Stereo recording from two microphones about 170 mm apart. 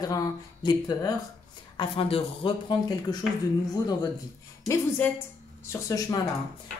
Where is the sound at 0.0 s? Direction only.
20° left (ahead or behind).